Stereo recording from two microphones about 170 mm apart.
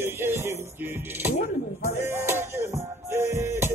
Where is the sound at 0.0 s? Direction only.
15° right (ahead or behind).